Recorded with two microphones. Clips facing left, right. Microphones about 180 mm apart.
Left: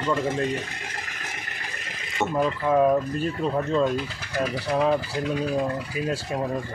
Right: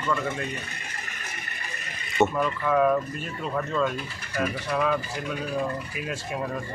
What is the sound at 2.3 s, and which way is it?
Speech, 30° left (ahead or behind).